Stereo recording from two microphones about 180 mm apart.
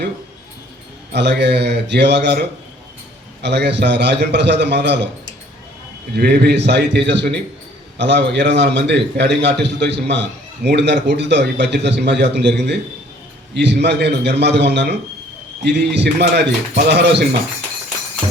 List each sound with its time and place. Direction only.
1.1 s a man's voice: 70° right (ahead or behind)
6.1 s a man's voice: 65° right (ahead or behind)